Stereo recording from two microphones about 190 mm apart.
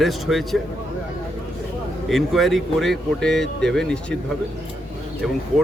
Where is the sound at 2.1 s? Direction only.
Centre (ahead or behind).